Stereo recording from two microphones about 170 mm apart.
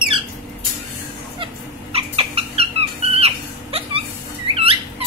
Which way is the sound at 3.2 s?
35° right (ahead or behind).